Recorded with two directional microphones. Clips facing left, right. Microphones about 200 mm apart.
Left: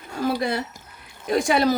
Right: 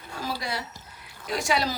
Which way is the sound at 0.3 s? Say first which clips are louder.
Left 9 dB; 55° left (ahead or behind).